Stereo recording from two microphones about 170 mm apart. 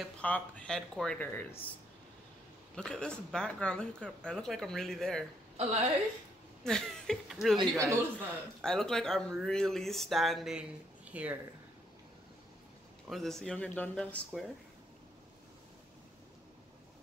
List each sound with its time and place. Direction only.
0.0 s speech: 5° left (ahead or behind)
2.7 s speech: 5° left (ahead or behind)
5.6 s a woman's voice: 40° right (ahead or behind)
6.6 s speech: 5° left (ahead or behind)
7.5 s speech: 20° right (ahead or behind)
8.6 s speech: 5° left (ahead or behind)
13.1 s speech: centre (ahead or behind)